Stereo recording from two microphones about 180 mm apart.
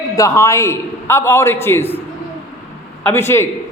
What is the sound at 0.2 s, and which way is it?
A man's voice, 15° left (ahead or behind).